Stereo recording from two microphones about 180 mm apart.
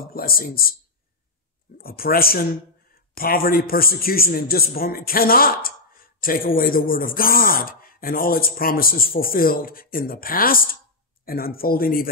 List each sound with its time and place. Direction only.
0.1 s speech: 55° left (ahead or behind)
1.8 s a man's voice: 55° left (ahead or behind)